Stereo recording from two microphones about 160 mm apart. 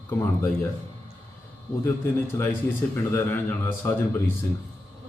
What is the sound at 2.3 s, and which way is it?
A man's voice, 20° left (ahead or behind).